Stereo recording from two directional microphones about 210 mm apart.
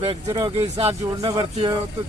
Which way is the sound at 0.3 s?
20° right (ahead or behind).